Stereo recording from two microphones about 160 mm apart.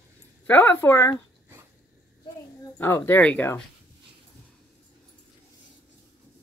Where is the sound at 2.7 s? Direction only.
15° left (ahead or behind).